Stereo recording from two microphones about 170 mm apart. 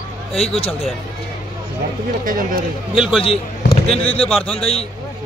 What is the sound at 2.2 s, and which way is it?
Speech, 55° right (ahead or behind).